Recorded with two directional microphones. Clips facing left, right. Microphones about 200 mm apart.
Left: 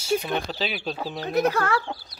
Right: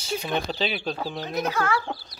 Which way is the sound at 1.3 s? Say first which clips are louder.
Left 4 dB; 60° left (ahead or behind).